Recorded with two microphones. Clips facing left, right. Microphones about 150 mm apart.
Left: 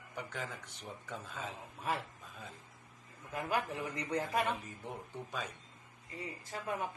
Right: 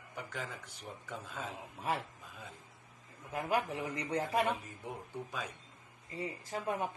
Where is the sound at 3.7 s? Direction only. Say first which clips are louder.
Right 1 dB; 35° right (ahead or behind).